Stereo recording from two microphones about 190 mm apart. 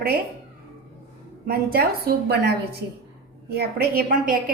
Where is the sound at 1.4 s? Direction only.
55° right (ahead or behind).